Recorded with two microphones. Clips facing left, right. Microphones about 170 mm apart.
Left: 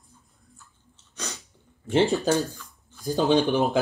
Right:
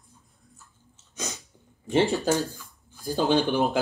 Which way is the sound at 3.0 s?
15° left (ahead or behind).